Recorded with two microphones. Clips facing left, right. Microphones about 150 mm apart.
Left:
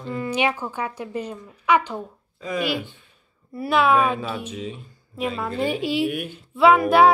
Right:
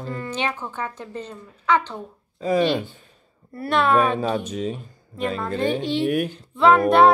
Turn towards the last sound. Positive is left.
turn(degrees=5)  # may be behind; listen again after turning